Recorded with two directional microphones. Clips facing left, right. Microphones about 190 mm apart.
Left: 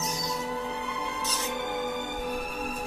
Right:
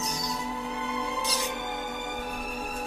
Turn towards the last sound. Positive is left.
turn(degrees=-15)  # may be behind; listen again after turning